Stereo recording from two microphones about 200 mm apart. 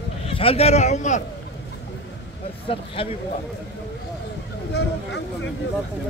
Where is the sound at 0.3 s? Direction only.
30° left (ahead or behind).